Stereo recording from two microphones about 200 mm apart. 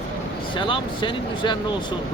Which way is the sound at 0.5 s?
25° left (ahead or behind).